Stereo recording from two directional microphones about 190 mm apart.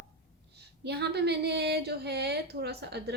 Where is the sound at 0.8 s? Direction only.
60° right (ahead or behind).